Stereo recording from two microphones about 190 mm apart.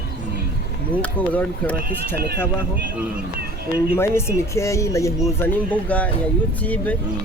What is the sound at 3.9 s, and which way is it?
Speech, 15° left (ahead or behind).